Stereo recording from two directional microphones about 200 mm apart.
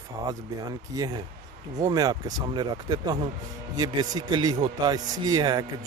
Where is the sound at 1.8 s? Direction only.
20° right (ahead or behind).